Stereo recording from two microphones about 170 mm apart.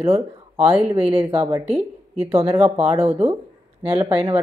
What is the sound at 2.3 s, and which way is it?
Speech, 35° right (ahead or behind).